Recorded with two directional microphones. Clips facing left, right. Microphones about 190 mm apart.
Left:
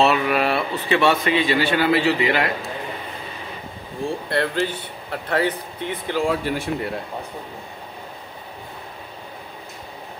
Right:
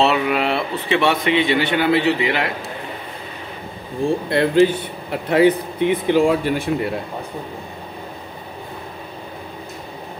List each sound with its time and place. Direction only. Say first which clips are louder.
0.1 s speech: right 1 dB; 20° right (ahead or behind)
4.3 s speech: right 9 dB; 15° right (ahead or behind)